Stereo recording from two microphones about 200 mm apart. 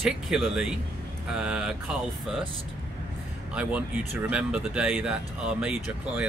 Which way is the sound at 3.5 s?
5° right (ahead or behind).